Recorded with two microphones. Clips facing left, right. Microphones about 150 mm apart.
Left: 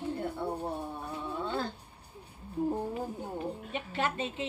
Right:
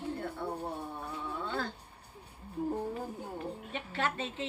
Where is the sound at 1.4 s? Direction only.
25° left (ahead or behind).